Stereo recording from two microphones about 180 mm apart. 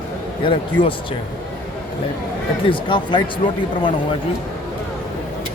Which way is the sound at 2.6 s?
25° left (ahead or behind).